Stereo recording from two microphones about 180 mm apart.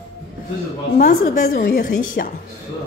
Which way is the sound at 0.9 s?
50° left (ahead or behind).